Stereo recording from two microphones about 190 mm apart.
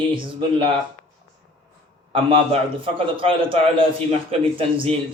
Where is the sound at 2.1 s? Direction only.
30° right (ahead or behind).